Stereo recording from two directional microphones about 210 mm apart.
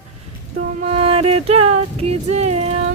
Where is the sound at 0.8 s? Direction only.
30° right (ahead or behind).